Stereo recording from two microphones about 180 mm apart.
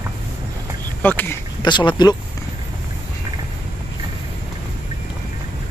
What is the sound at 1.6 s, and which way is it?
Speech, 25° left (ahead or behind).